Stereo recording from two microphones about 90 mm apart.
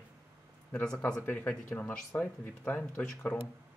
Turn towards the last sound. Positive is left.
turn(degrees=15)  # may be behind; listen again after turning